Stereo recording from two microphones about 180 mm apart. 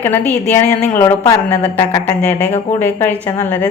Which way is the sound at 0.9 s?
20° left (ahead or behind).